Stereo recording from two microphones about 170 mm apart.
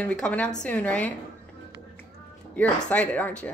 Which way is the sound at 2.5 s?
10° left (ahead or behind).